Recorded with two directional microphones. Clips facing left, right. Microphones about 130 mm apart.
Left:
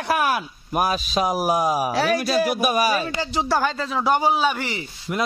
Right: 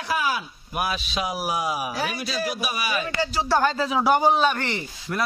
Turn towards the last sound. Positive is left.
turn(degrees=5)  # may be behind; listen again after turning